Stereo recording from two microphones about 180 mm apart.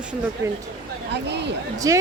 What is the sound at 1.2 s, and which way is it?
Speech, 70° right (ahead or behind).